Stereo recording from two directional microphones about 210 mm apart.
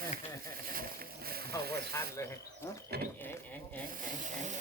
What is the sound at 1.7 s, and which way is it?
Ratchet, 50° right (ahead or behind).